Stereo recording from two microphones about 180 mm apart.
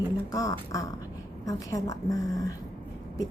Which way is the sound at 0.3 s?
20° left (ahead or behind).